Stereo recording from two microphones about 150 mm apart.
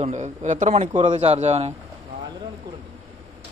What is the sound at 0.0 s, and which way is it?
Speech, 50° right (ahead or behind).